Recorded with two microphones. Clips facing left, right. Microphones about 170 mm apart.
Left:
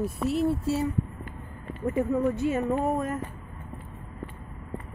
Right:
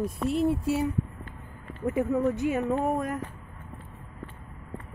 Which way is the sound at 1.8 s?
Centre (ahead or behind).